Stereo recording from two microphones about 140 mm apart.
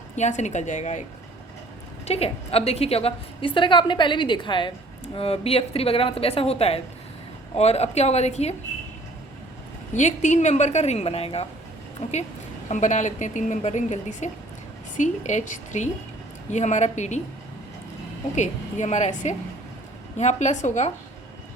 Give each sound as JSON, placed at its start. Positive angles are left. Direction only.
{"t": 0.2, "sound": "speech", "side_deg": 60}
{"t": 2.0, "sound": "a woman's voice", "side_deg": 45}
{"t": 9.9, "sound": "a woman's voice", "side_deg": 60}
{"t": 12.6, "sound": "speech", "side_deg": 60}
{"t": 18.3, "sound": "speech", "side_deg": 55}